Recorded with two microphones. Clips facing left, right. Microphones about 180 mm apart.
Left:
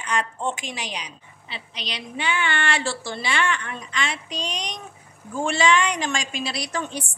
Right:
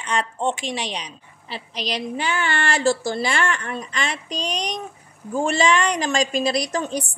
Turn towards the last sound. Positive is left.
turn(degrees=-40)  # may be behind; listen again after turning